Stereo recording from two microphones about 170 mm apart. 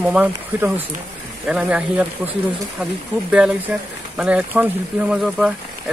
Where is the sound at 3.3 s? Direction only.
5° right (ahead or behind).